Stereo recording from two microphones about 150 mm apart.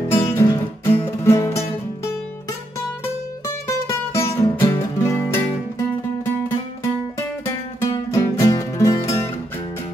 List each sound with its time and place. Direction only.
0.1 s music: 15° left (ahead or behind)
3.6 s music: 20° left (ahead or behind)
8.1 s music: 20° left (ahead or behind)